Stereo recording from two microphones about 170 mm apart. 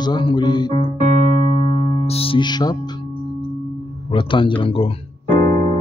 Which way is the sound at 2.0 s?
35° left (ahead or behind).